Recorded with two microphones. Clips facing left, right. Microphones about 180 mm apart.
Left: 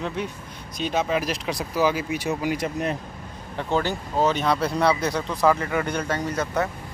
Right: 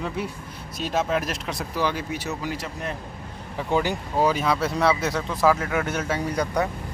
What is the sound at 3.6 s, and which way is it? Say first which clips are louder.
Speech: right 1 dB; 10° right (ahead or behind).